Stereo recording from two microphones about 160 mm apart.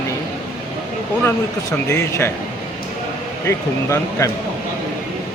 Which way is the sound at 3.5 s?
15° left (ahead or behind).